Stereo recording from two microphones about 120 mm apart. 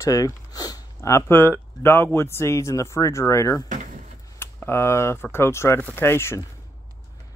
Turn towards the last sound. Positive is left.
turn(degrees=20)  # may be behind; listen again after turning